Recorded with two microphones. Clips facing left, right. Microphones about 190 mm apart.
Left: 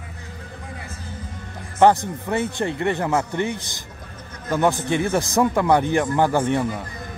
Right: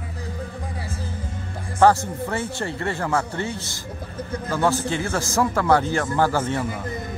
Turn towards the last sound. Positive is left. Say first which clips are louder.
# left 2 dB
turn(degrees=20)  # may be behind; listen again after turning